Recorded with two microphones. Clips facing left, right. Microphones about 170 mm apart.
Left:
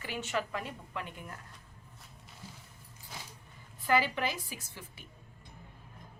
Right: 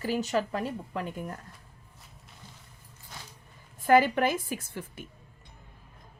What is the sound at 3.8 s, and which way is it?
A woman's voice, 50° right (ahead or behind).